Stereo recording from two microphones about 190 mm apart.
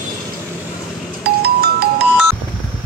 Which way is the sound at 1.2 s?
55° right (ahead or behind).